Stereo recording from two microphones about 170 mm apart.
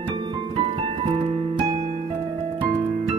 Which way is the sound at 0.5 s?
30° right (ahead or behind).